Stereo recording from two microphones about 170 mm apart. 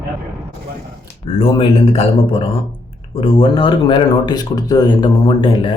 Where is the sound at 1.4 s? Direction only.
35° left (ahead or behind).